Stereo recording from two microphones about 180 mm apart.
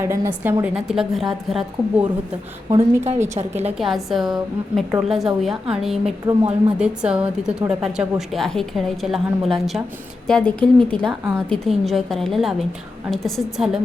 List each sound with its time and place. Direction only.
0.0 s a woman's voice: 10° right (ahead or behind)
2.7 s a woman's voice: 35° right (ahead or behind)
3.7 s a woman's voice: centre (ahead or behind)
6.2 s a woman's voice: 25° right (ahead or behind)
6.7 s a woman's voice: 5° right (ahead or behind)